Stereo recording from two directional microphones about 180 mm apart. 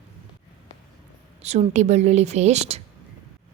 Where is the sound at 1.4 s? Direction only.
40° right (ahead or behind).